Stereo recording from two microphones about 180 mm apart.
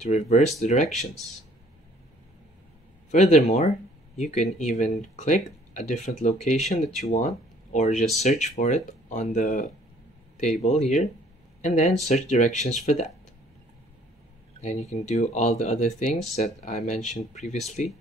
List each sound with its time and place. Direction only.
0.0 s speech: 40° left (ahead or behind)
3.1 s speech: 40° left (ahead or behind)
14.6 s speech: 40° left (ahead or behind)